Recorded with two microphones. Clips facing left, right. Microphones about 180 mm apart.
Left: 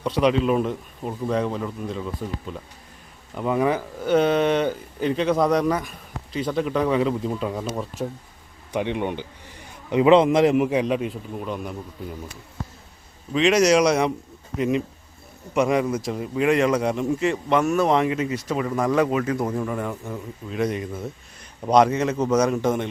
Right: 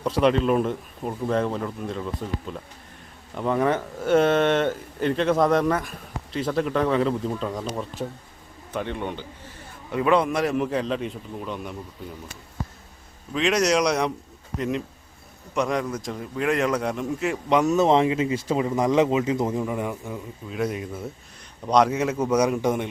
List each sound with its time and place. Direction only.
0.0 s speech: centre (ahead or behind)
8.7 s a man's voice: 15° left (ahead or behind)
13.3 s speech: centre (ahead or behind)
17.5 s speech: 15° right (ahead or behind)
20.1 s speech: centre (ahead or behind)
21.9 s a man's voice: 10° right (ahead or behind)